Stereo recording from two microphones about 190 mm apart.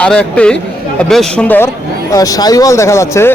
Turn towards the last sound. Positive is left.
turn(degrees=15)  # may be behind; listen again after turning